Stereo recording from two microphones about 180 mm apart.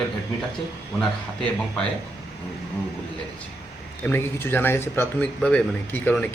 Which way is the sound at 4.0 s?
10° left (ahead or behind).